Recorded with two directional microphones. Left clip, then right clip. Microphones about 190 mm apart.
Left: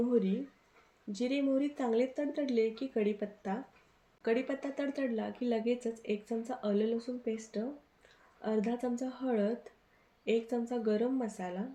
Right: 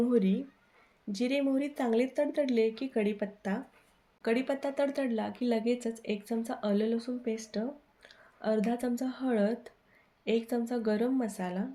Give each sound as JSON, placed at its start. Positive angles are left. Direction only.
{"t": 0.1, "sound": "speech", "side_deg": -30}